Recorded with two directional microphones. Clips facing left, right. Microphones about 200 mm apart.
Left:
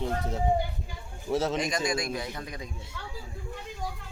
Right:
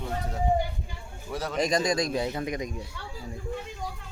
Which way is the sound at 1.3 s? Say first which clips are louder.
Left 4 dB; 25° left (ahead or behind).